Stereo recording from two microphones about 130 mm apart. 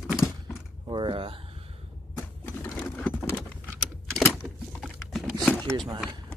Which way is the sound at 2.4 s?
15° left (ahead or behind).